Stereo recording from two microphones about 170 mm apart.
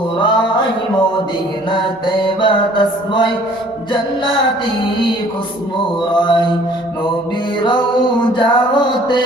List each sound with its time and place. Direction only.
0.2 s a sound: 30° left (ahead or behind)
1.7 s mantra: 30° left (ahead or behind)
6.1 s mantra: 25° left (ahead or behind)
8.4 s mantra: 30° left (ahead or behind)